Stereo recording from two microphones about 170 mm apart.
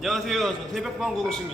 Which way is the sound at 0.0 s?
Centre (ahead or behind).